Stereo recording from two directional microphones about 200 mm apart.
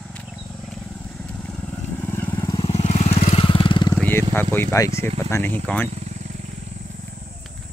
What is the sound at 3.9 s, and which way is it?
Speech, 10° left (ahead or behind).